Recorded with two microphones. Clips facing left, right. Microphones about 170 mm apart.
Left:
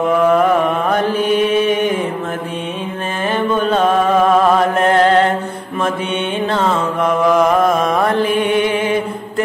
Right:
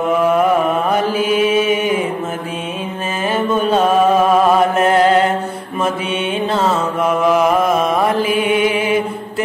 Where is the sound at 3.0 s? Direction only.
5° right (ahead or behind).